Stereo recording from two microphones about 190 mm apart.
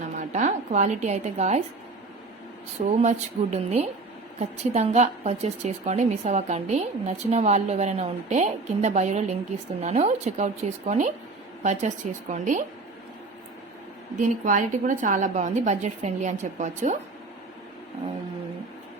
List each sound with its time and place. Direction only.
0.0 s a woman's voice: 40° right (ahead or behind)
3.0 s a woman's voice: 35° right (ahead or behind)
14.2 s a woman's voice: 40° right (ahead or behind)